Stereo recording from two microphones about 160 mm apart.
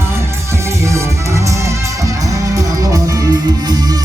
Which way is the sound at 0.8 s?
20° right (ahead or behind).